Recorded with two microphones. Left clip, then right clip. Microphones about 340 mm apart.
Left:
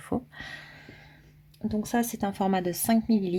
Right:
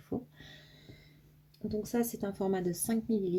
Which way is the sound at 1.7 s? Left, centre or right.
Left.